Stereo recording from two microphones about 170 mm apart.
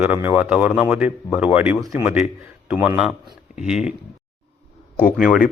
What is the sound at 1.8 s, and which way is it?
Speech, 20° right (ahead or behind).